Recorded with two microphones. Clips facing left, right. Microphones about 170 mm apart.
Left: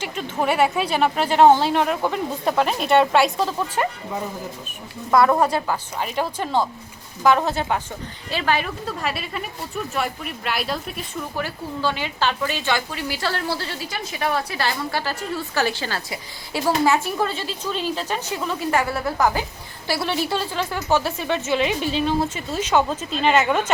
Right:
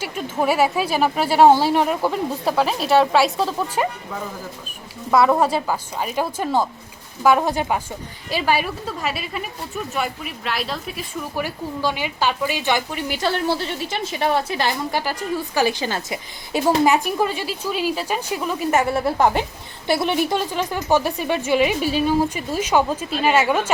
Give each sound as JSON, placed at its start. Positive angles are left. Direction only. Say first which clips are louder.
{"t": 0.0, "sound": "speech", "louder": "right 2 dB", "side_deg": -5}
{"t": 5.1, "sound": "a woman's voice", "louder": "right 1 dB", "side_deg": -5}
{"t": 11.3, "sound": "a woman's voice", "louder": "right 3 dB", "side_deg": -15}
{"t": 18.7, "sound": "a woman's voice", "louder": "right 4 dB", "side_deg": -25}